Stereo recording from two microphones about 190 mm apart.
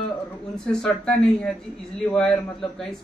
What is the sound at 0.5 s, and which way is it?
A man's voice, 5° left (ahead or behind).